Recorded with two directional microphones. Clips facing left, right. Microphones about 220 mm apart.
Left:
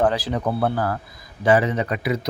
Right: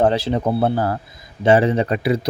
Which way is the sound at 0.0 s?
25° right (ahead or behind).